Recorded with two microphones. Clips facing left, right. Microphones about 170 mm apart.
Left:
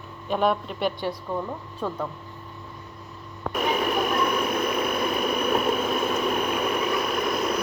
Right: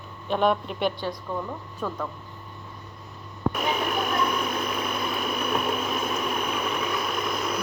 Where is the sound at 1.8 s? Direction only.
20° left (ahead or behind).